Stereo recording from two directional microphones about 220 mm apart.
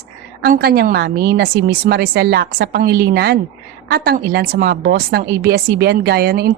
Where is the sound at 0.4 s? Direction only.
40° right (ahead or behind).